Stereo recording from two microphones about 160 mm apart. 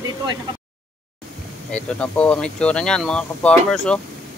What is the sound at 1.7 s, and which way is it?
Speech, 5° left (ahead or behind).